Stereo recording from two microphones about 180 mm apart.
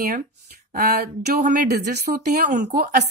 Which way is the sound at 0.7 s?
55° right (ahead or behind).